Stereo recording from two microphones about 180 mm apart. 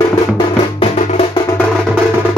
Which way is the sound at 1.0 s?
40° left (ahead or behind).